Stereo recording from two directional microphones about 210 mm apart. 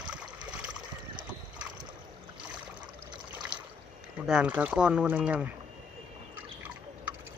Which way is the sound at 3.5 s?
25° right (ahead or behind).